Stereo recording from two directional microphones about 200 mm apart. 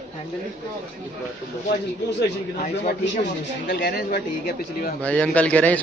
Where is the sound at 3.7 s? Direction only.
55° left (ahead or behind).